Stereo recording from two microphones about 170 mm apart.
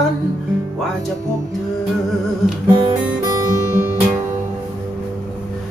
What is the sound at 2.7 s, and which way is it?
Guitar, 25° right (ahead or behind).